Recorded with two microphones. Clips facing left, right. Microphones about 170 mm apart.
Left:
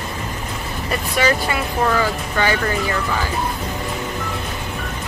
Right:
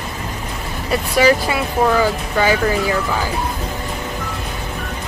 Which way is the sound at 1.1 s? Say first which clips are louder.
Right 5 dB; 5° right (ahead or behind).